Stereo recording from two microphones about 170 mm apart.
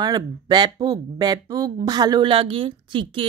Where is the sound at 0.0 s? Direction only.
25° right (ahead or behind).